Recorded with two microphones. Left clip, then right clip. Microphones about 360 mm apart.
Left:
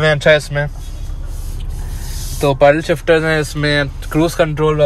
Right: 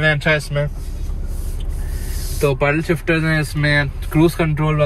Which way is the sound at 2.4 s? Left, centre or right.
Left.